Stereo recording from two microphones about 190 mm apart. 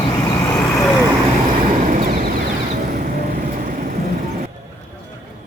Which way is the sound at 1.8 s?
40° right (ahead or behind).